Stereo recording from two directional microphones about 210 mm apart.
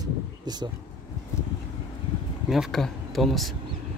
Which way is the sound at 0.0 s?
20° right (ahead or behind).